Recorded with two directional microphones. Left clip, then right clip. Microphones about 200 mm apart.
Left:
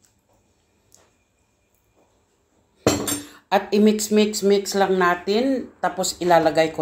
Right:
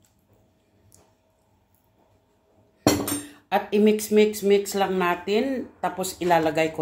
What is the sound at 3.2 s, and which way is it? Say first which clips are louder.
Speech: left 5 dB; 20° left (ahead or behind).